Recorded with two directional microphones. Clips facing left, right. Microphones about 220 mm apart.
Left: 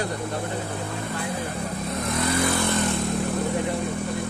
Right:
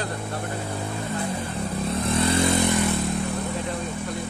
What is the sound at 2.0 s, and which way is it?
Vehicle, 30° right (ahead or behind).